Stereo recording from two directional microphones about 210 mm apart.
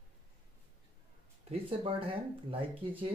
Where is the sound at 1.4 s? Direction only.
25° right (ahead or behind).